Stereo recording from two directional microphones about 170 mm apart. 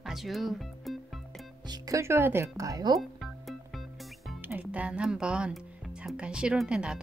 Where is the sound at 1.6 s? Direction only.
20° right (ahead or behind).